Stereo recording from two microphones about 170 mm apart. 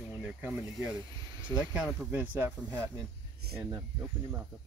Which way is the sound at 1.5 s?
5° right (ahead or behind).